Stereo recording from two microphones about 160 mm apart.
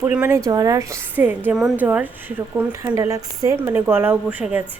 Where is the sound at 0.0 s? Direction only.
10° right (ahead or behind).